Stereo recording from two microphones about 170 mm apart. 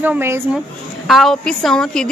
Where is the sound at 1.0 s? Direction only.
Centre (ahead or behind).